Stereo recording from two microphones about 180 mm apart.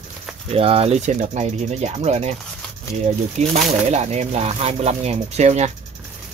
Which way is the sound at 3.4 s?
40° right (ahead or behind).